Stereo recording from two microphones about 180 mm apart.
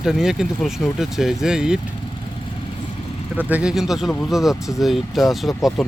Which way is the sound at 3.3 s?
10° right (ahead or behind).